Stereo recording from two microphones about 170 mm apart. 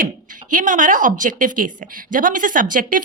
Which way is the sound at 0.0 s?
50° right (ahead or behind).